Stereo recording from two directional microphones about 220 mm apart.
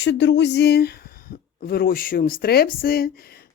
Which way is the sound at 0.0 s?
55° left (ahead or behind).